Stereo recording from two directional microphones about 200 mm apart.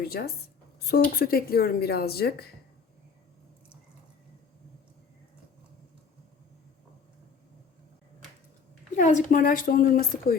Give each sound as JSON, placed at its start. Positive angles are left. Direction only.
{"t": 0.0, "sound": "speech", "side_deg": 50}
{"t": 9.0, "sound": "speech", "side_deg": 40}